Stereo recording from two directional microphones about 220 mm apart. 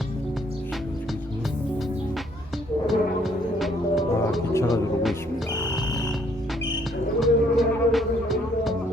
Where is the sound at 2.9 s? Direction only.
Centre (ahead or behind).